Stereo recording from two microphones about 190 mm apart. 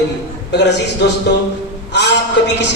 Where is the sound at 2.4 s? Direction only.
70° left (ahead or behind).